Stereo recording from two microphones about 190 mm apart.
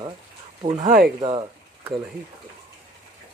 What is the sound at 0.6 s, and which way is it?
Speech, 40° right (ahead or behind).